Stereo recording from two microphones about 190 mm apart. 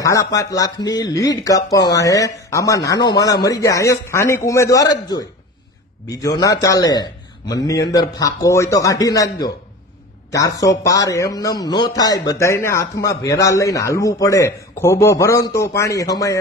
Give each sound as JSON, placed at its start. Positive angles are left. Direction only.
{"t": 0.0, "sound": "a man's voice", "side_deg": 15}